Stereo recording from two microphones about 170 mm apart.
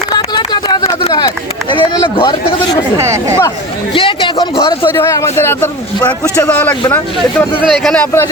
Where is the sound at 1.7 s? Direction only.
30° left (ahead or behind).